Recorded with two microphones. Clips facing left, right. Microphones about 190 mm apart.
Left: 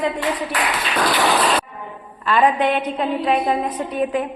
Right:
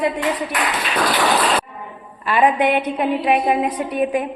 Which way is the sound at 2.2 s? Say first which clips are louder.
Right 1 dB; 10° right (ahead or behind).